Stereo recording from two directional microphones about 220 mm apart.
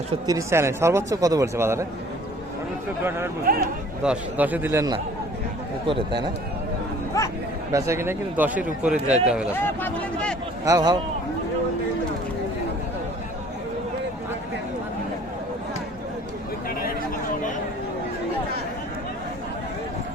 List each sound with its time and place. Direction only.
0.3 s a man's voice: 15° right (ahead or behind)
3.0 s a man's voice: 10° right (ahead or behind)
3.4 s speech: 40° right (ahead or behind)
4.0 s a man's voice: 5° right (ahead or behind)
7.7 s a man's voice: 15° right (ahead or behind)
9.6 s speech: 10° left (ahead or behind)
10.7 s a man's voice: 15° right (ahead or behind)